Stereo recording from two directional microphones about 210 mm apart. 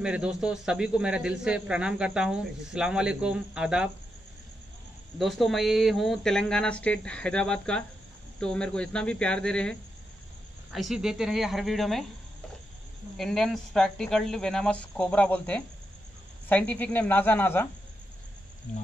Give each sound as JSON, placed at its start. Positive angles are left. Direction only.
{"t": 0.0, "sound": "a man's voice", "side_deg": -5}
{"t": 5.2, "sound": "a man's voice", "side_deg": 0}
{"t": 13.2, "sound": "a man's voice", "side_deg": 0}
{"t": 18.7, "sound": "speech", "side_deg": 35}